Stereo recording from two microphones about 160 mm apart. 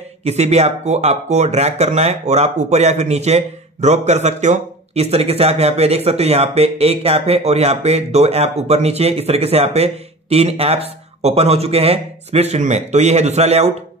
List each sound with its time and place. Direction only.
0.2 s speech: 40° right (ahead or behind)